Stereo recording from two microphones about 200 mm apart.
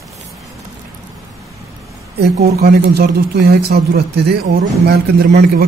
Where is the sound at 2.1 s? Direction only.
50° right (ahead or behind).